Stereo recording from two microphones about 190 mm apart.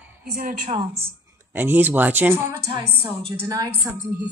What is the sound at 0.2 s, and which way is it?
Speech, 50° right (ahead or behind).